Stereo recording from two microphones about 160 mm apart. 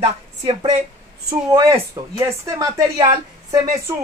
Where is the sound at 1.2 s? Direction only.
20° right (ahead or behind).